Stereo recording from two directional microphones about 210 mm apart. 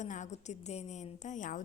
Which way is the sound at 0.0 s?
35° left (ahead or behind).